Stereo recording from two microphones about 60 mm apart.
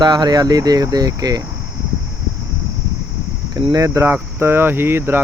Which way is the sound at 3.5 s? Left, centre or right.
Right.